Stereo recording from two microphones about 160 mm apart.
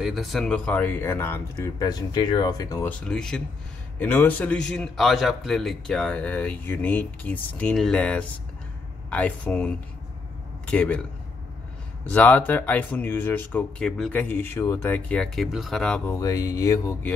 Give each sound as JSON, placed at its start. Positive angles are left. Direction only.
{"t": 0.0, "sound": "a man's voice", "side_deg": 0}
{"t": 10.7, "sound": "a man's voice", "side_deg": 10}
{"t": 12.1, "sound": "a man's voice", "side_deg": 10}
{"t": 16.1, "sound": "speech", "side_deg": 20}